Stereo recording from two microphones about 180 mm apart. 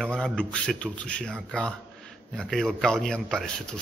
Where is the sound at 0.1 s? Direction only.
5° left (ahead or behind).